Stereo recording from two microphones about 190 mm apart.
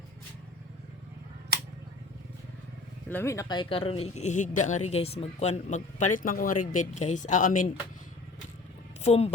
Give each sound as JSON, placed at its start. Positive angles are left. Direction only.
{"t": 3.1, "sound": "speech", "side_deg": 10}
{"t": 9.0, "sound": "speech", "side_deg": 35}